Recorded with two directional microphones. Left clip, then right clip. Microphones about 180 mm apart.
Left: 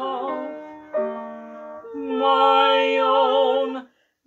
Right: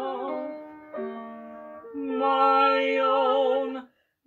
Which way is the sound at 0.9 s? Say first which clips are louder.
Left 10 dB; 45° right (ahead or behind).